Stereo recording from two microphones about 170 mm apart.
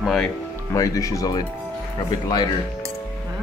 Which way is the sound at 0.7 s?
20° left (ahead or behind).